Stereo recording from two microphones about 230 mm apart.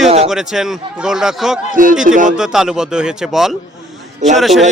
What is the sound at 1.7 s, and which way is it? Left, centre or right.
Speech, right.